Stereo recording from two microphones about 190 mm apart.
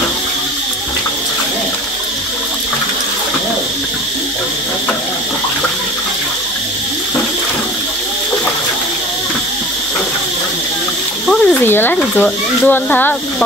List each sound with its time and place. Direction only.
11.2 s speech: 10° left (ahead or behind)